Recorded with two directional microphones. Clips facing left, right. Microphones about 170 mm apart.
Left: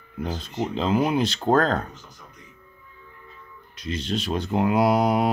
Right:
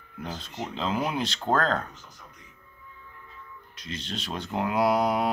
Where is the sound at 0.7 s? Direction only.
10° left (ahead or behind).